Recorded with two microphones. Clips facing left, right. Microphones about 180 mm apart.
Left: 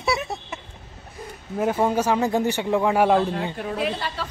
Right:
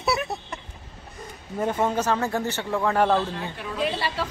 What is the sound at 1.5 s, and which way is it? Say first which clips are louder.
A man's voice: left 3 dB; 5° left (ahead or behind).